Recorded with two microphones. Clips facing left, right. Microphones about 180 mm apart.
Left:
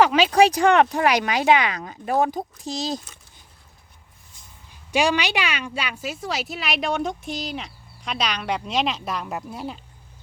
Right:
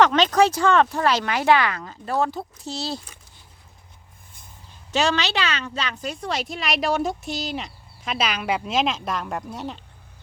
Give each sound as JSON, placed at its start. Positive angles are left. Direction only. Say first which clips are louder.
{"t": 0.0, "sound": "speech", "louder": "left 1 dB", "side_deg": 10}
{"t": 4.9, "sound": "a woman's voice", "louder": "left 1 dB", "side_deg": 10}